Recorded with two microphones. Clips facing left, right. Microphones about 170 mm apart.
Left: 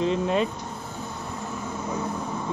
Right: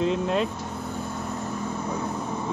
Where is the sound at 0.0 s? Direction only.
Centre (ahead or behind).